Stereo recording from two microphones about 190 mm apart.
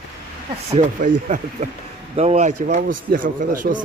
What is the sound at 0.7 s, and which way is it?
Speech, 40° right (ahead or behind).